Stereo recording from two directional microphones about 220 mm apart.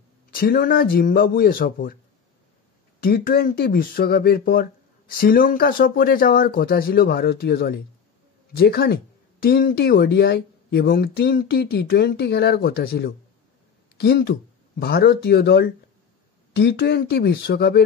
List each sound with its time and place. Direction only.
0.3 s a man's voice: 40° left (ahead or behind)
3.0 s speech: 40° left (ahead or behind)